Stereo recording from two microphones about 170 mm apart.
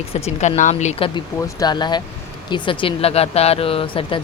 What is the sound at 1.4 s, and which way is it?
Speech, 20° left (ahead or behind).